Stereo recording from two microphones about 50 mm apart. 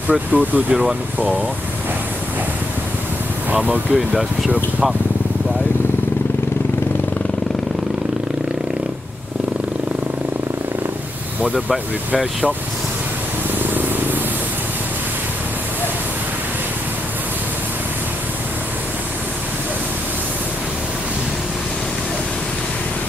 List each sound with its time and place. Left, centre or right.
0.1 s speech: right
3.5 s speech: right
13.6 s purr: right